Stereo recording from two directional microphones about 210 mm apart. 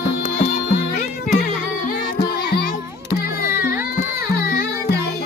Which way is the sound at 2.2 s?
50° left (ahead or behind).